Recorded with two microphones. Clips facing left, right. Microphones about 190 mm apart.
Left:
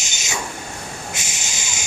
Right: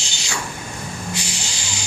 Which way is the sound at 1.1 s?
20° left (ahead or behind).